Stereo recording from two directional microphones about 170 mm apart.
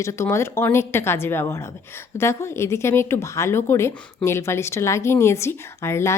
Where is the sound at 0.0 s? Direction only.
15° left (ahead or behind).